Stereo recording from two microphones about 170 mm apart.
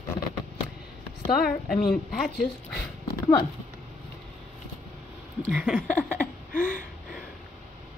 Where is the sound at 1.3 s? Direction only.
60° left (ahead or behind).